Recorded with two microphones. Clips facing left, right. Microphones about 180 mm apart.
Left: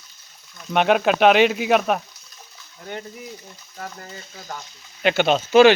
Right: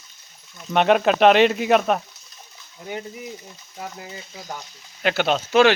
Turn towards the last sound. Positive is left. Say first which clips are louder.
# left 3 dB
turn(degrees=5)  # may be behind; listen again after turning